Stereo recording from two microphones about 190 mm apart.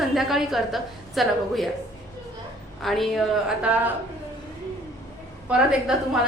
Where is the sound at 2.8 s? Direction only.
Centre (ahead or behind).